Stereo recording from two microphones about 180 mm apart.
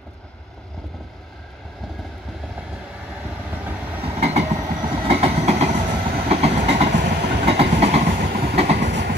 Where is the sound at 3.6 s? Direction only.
10° right (ahead or behind).